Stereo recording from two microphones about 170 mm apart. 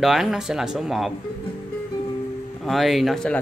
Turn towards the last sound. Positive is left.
turn(degrees=5)  # may be behind; listen again after turning